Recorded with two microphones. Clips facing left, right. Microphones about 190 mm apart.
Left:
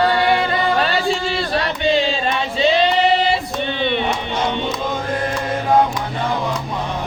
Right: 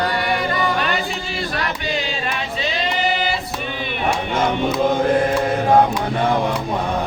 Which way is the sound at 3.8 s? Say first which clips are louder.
Left 7 dB; 30° left (ahead or behind).